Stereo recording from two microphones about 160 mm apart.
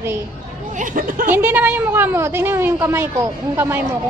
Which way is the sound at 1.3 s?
10° right (ahead or behind).